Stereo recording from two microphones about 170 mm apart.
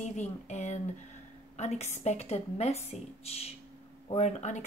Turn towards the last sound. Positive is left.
turn(degrees=40)  # may be behind; listen again after turning